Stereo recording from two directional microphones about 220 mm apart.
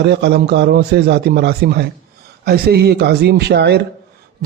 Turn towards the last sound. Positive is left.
turn(degrees=-50)  # may be behind; listen again after turning